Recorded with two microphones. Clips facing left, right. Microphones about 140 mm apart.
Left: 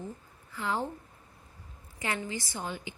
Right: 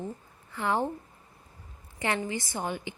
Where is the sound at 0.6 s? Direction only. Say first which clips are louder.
Right 4 dB; 60° right (ahead or behind).